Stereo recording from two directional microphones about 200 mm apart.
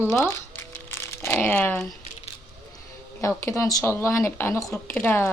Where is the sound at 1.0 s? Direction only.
15° left (ahead or behind).